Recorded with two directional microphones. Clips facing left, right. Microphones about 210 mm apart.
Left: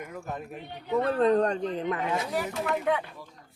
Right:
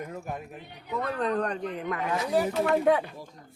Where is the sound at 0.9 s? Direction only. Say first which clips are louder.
Left 6 dB; 30° left (ahead or behind).